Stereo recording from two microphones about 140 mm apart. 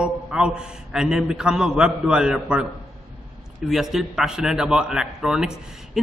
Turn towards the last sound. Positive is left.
turn(degrees=-5)  # may be behind; listen again after turning